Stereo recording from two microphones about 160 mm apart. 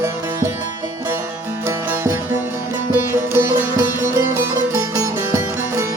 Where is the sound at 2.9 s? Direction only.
15° right (ahead or behind).